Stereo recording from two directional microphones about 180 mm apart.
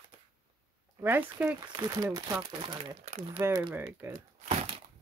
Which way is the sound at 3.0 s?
40° right (ahead or behind).